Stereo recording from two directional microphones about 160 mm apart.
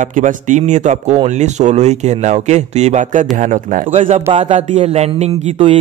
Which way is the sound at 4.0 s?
40° right (ahead or behind).